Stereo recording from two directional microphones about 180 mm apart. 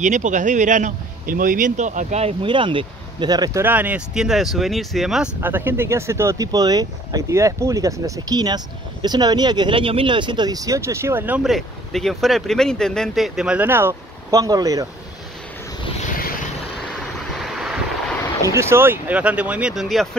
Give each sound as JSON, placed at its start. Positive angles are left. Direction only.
{"t": 0.0, "sound": "a man's voice", "side_deg": -45}
{"t": 3.6, "sound": "speech", "side_deg": -10}
{"t": 16.1, "sound": "vehicle", "side_deg": 55}
{"t": 17.4, "sound": "vehicle", "side_deg": 0}
{"t": 18.4, "sound": "speech", "side_deg": -15}